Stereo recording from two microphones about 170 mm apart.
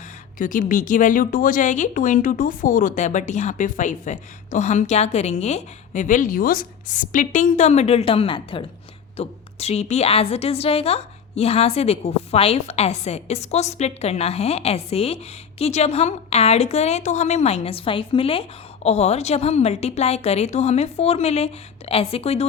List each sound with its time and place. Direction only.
0.3 s a woman's voice: 55° left (ahead or behind); by 22.4 s 35° left (ahead or behind)